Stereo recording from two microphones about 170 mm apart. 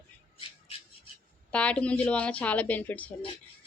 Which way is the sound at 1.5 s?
5° left (ahead or behind).